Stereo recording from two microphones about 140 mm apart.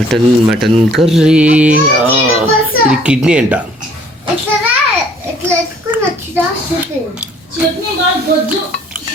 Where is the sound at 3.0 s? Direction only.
5° right (ahead or behind).